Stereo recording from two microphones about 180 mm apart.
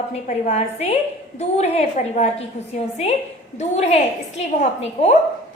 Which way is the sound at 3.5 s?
35° left (ahead or behind).